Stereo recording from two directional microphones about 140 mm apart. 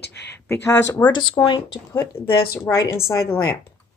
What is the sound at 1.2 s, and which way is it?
Speech, 30° left (ahead or behind).